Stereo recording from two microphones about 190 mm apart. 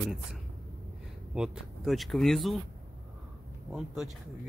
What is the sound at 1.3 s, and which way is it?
Speech, 5° right (ahead or behind).